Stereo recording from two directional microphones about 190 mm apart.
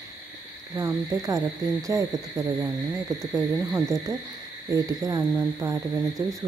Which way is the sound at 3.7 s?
20° right (ahead or behind).